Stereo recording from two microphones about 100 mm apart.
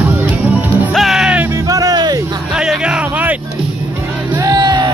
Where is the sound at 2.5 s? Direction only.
10° right (ahead or behind).